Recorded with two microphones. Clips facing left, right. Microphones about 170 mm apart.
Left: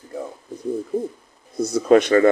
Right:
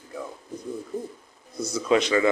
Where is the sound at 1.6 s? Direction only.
55° left (ahead or behind).